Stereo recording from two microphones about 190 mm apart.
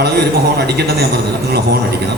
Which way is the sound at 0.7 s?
55° right (ahead or behind).